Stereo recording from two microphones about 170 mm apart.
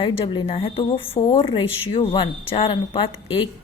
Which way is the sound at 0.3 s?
30° left (ahead or behind).